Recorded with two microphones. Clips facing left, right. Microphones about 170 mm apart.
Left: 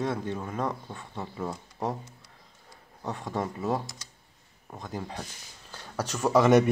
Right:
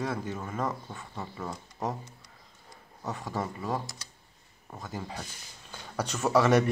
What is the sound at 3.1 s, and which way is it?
Speech, 5° right (ahead or behind).